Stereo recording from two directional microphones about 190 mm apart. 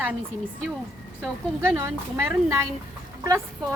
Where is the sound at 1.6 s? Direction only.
15° right (ahead or behind).